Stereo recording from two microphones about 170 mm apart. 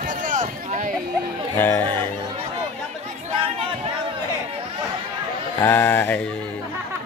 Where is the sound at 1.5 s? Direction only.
15° left (ahead or behind).